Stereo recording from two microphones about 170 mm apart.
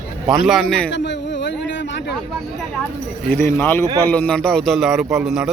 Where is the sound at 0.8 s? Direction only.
90° left.